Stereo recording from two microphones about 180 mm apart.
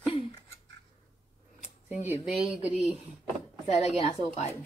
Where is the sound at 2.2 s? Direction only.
5° right (ahead or behind).